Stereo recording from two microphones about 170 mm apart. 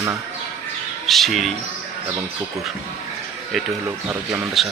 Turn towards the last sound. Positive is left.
turn(degrees=-5)  # may be behind; listen again after turning